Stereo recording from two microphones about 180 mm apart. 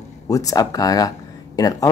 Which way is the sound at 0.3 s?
20° left (ahead or behind).